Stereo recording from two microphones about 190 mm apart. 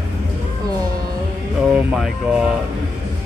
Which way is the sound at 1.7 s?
5° right (ahead or behind).